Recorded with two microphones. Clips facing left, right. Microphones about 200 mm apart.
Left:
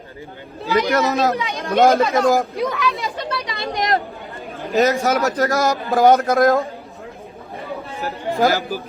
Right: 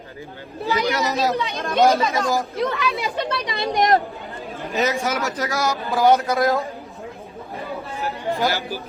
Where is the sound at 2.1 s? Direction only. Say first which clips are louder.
Left 6 dB; 50° left (ahead or behind).